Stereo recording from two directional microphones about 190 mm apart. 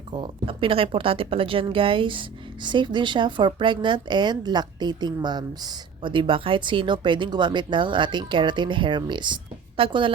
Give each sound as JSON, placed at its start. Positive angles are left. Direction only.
{"t": 0.1, "sound": "speech", "side_deg": -25}